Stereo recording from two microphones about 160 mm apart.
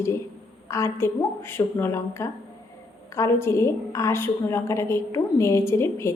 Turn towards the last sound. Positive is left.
turn(degrees=15)  # may be behind; listen again after turning